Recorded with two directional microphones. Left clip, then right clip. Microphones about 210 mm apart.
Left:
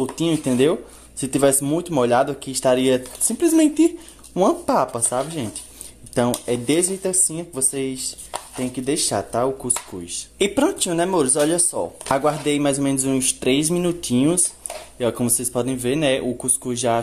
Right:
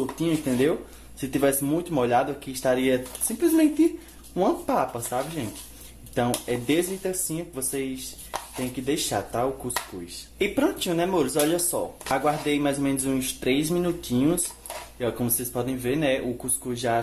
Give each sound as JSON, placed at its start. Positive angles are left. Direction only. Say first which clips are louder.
{"t": 0.2, "sound": "speech", "louder": "left 5 dB", "side_deg": 35}